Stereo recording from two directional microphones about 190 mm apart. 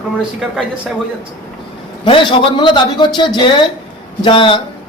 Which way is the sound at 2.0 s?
25° left (ahead or behind).